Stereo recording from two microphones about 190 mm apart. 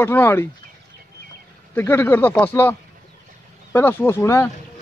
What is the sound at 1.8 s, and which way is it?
Speech, 10° left (ahead or behind).